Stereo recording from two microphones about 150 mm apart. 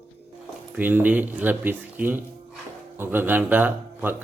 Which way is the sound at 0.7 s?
10° right (ahead or behind).